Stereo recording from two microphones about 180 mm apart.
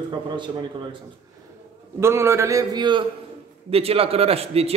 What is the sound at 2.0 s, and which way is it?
A man's voice, 15° right (ahead or behind).